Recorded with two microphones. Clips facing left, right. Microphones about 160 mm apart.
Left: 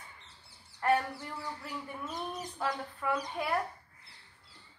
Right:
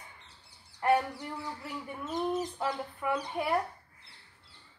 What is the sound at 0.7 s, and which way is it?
A child's voice, 15° right (ahead or behind).